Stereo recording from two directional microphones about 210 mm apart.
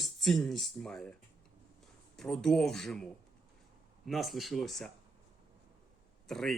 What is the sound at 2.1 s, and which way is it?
Speech, centre (ahead or behind).